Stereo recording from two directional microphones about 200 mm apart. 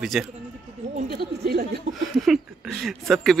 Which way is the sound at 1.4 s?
55° right (ahead or behind).